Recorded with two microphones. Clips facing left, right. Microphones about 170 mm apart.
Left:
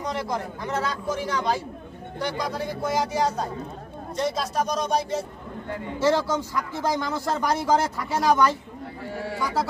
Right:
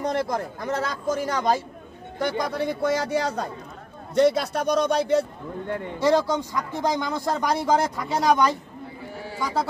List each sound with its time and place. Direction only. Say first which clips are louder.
0.0 s speech: right 3 dB; 50° right (ahead or behind)
5.9 s speech: right 1 dB; 15° right (ahead or behind)